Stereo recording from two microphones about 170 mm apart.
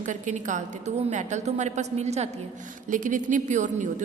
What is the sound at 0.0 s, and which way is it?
A woman's voice, 45° right (ahead or behind).